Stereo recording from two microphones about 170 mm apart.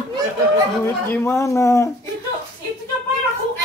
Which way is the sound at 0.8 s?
15° left (ahead or behind).